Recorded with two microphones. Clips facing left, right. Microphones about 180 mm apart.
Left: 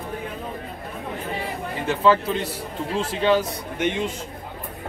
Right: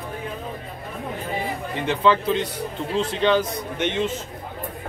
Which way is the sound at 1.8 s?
5° left (ahead or behind).